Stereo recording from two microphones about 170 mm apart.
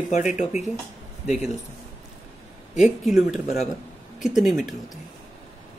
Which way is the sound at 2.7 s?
5° right (ahead or behind).